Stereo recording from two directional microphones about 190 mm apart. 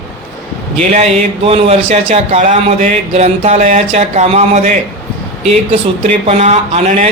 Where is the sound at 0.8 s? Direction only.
40° right (ahead or behind).